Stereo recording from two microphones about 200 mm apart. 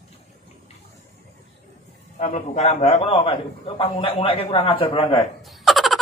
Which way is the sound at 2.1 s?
35° left (ahead or behind).